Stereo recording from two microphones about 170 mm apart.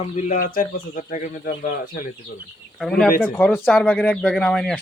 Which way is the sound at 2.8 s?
5° left (ahead or behind).